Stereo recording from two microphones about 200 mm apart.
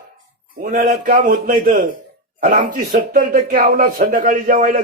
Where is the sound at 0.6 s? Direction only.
45° right (ahead or behind).